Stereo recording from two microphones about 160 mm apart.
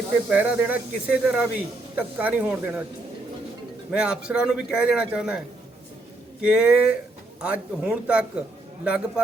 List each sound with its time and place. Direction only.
0.3 s speech: 10° right (ahead or behind)
3.9 s a man's voice: 5° right (ahead or behind)
6.4 s speech: 5° right (ahead or behind)